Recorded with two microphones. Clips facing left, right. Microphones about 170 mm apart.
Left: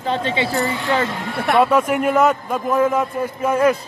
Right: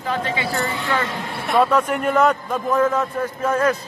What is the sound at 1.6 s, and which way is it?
A man's voice, 10° left (ahead or behind).